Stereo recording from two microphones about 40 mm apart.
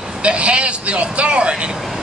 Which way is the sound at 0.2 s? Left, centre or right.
Right.